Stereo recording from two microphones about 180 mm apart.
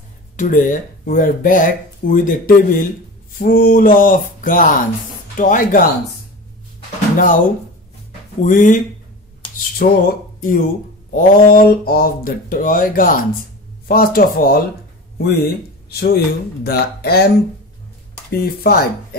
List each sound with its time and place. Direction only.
0.4 s speech: 50° left (ahead or behind)
7.2 s speech: 50° left (ahead or behind)
9.8 s speech: 60° left (ahead or behind)
18.6 s speech: 60° left (ahead or behind)